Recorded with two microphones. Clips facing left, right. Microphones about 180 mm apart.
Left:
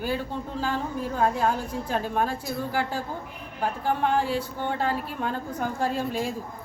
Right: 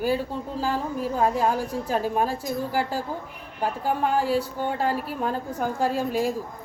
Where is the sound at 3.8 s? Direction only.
10° right (ahead or behind).